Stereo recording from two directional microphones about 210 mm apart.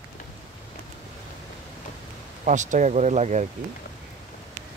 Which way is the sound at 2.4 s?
35° right (ahead or behind).